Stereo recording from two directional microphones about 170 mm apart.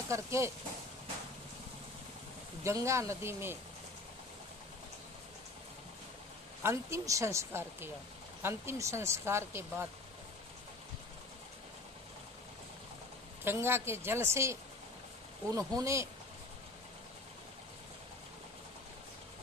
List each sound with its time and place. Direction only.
0.1 s speech: 15° right (ahead or behind)
2.6 s speech: 15° right (ahead or behind)
6.6 s speech: 15° right (ahead or behind)
13.4 s speech: 15° right (ahead or behind)